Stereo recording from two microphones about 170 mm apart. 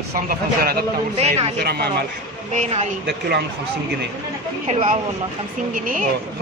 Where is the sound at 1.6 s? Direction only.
70° right (ahead or behind).